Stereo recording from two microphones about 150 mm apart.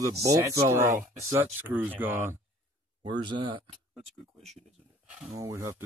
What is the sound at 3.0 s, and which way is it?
Speech, 30° right (ahead or behind).